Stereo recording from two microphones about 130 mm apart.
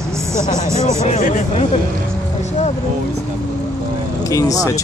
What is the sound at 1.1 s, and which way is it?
Speech, 80° left.